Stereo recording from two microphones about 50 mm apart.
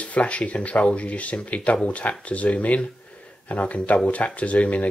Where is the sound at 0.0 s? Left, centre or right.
Left.